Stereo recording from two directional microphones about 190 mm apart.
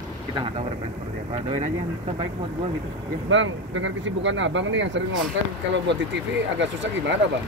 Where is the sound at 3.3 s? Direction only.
80° right.